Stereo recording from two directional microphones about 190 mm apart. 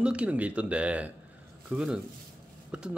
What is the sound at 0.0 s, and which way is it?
Speech, 5° right (ahead or behind).